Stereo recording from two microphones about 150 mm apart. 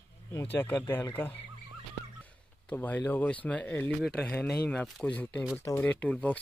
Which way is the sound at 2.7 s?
10° left (ahead or behind).